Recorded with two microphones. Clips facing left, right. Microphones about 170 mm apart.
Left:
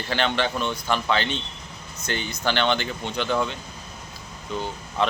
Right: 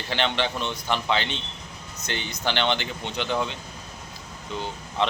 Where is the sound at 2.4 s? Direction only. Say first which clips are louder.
Left 2 dB; 15° right (ahead or behind).